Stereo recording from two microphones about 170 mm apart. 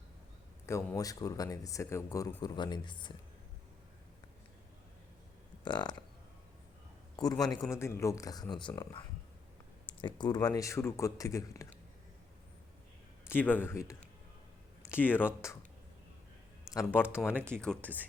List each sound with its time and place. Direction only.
0.6 s speech: 15° left (ahead or behind)
5.6 s speech: 25° left (ahead or behind)
7.2 s speech: 20° left (ahead or behind)
13.2 s speech: 10° left (ahead or behind)
16.7 s speech: 15° left (ahead or behind)